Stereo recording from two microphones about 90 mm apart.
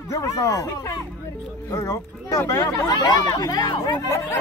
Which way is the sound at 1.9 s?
35° left (ahead or behind).